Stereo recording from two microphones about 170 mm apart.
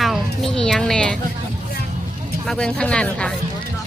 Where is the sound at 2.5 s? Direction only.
5° left (ahead or behind).